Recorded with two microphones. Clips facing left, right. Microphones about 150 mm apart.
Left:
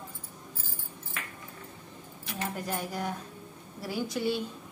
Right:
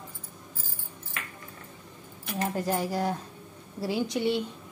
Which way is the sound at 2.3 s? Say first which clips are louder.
Right 6 dB; 35° right (ahead or behind).